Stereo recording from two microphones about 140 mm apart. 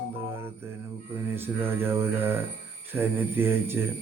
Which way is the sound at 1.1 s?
15° right (ahead or behind).